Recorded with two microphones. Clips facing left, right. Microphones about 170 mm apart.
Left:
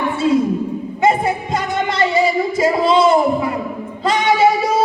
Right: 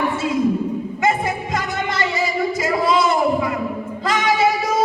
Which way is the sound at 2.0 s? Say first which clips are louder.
Left 6 dB; 30° left (ahead or behind).